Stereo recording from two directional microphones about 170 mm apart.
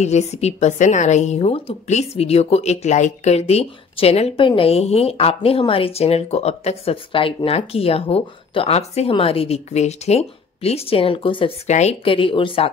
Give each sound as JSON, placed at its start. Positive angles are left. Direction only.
{"t": 0.0, "sound": "a woman's voice", "side_deg": 40}